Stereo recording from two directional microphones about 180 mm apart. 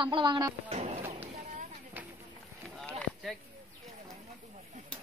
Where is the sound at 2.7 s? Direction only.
5° left (ahead or behind).